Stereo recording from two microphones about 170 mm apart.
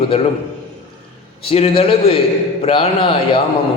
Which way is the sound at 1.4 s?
35° left (ahead or behind).